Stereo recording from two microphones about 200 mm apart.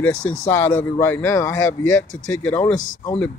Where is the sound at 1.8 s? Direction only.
75° left (ahead or behind).